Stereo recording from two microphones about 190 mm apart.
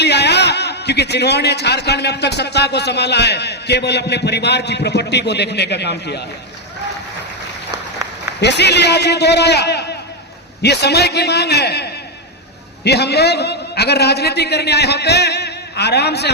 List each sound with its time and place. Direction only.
0.0 s a man's voice: 60° left (ahead or behind)
8.4 s a man's voice: 65° left (ahead or behind)